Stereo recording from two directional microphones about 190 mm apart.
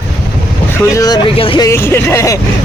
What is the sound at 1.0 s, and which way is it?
Speech, 20° left (ahead or behind).